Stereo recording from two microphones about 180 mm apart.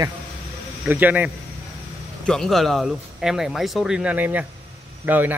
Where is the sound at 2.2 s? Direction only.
Centre (ahead or behind).